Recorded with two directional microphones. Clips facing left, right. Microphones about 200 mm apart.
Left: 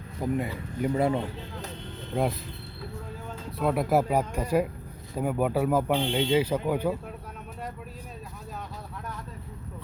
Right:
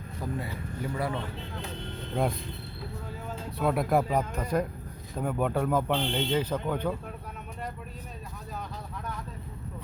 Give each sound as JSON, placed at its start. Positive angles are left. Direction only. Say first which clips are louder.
{"t": 0.2, "sound": "speech", "louder": "left 6 dB", "side_deg": 20}
{"t": 3.2, "sound": "speech", "louder": "left 1 dB", "side_deg": 0}